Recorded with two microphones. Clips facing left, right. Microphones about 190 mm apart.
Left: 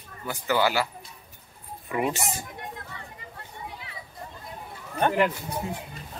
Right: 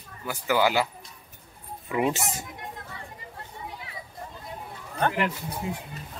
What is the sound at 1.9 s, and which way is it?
Speech, 15° right (ahead or behind).